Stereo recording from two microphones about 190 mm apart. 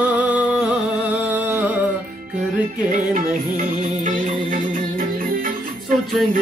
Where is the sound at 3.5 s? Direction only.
45° right (ahead or behind).